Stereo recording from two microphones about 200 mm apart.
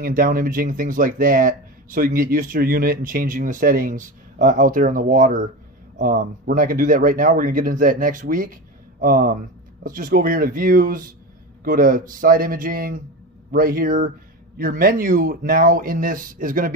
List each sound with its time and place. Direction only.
0.0 s speech: 45° right (ahead or behind)